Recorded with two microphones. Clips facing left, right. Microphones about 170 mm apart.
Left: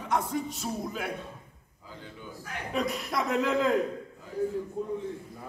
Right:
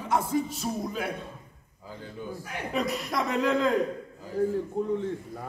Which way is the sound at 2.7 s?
Centre (ahead or behind).